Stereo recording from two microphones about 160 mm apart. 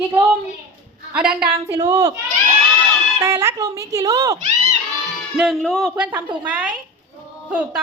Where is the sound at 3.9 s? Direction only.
20° right (ahead or behind).